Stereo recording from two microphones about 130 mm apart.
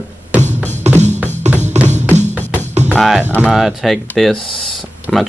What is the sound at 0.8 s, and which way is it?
Music, 60° right (ahead or behind).